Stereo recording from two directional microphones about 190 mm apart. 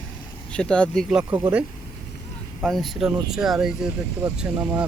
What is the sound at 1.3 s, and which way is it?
Speech, 10° right (ahead or behind).